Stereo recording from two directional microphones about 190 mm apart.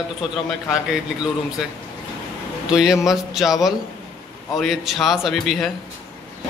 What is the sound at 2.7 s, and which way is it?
A man's voice, 5° right (ahead or behind).